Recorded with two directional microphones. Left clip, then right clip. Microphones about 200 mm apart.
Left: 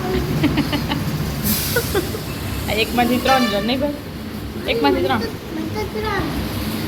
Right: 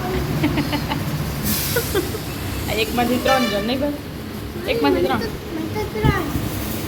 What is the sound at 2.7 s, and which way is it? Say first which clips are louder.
Speech: left 2 dB; centre (ahead or behind).